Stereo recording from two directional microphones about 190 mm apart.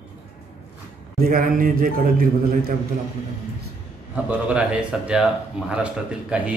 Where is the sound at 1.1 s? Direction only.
50° right (ahead or behind).